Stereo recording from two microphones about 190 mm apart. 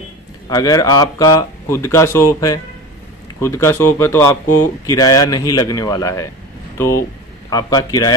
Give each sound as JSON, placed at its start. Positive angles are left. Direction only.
{"t": 0.5, "sound": "speech", "side_deg": 20}
{"t": 7.5, "sound": "speech", "side_deg": 20}